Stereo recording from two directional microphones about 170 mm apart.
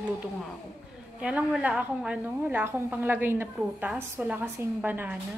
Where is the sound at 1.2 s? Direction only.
5° right (ahead or behind).